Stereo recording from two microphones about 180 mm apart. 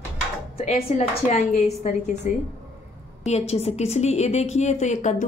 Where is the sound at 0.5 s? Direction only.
35° left (ahead or behind).